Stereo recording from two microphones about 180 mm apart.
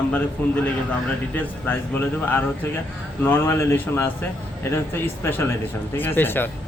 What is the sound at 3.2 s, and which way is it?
A man's voice, 10° left (ahead or behind).